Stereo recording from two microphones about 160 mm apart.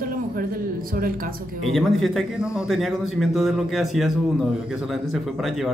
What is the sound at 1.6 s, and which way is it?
Speech, centre (ahead or behind).